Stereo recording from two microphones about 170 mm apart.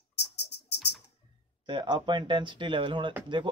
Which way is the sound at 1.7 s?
25° right (ahead or behind).